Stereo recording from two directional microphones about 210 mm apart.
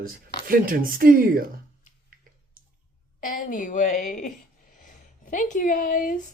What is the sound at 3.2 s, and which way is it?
A woman's voice, 40° left (ahead or behind).